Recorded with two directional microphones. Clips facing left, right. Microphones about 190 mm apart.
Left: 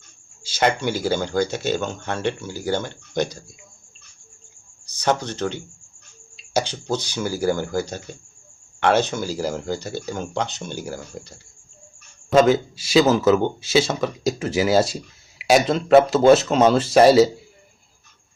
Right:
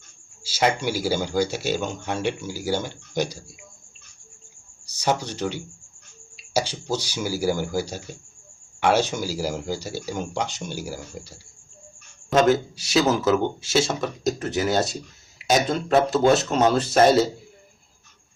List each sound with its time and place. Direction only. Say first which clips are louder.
0.4 s speech: left 2 dB; 10° right (ahead or behind)
4.9 s speech: left 2 dB; 10° right (ahead or behind)
16.0 s speech: left 5 dB; centre (ahead or behind)